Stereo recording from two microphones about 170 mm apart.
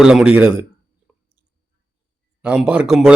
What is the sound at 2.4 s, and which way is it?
Speech, 5° right (ahead or behind).